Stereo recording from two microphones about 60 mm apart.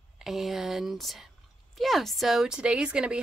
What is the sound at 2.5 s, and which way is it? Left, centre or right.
Speech, centre.